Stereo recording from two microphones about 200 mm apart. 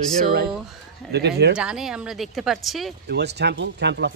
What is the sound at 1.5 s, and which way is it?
Speech, 5° right (ahead or behind).